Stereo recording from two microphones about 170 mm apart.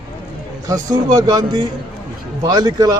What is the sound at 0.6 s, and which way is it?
A man's voice, 20° right (ahead or behind).